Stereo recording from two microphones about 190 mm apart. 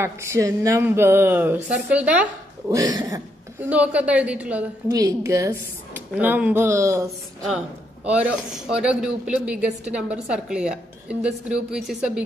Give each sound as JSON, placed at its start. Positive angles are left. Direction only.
{"t": 0.0, "sound": "speech", "side_deg": -15}
{"t": 2.7, "sound": "speech", "side_deg": -20}
{"t": 3.6, "sound": "speech", "side_deg": -5}
{"t": 4.9, "sound": "speech", "side_deg": -20}
{"t": 7.4, "sound": "a man's voice", "side_deg": -5}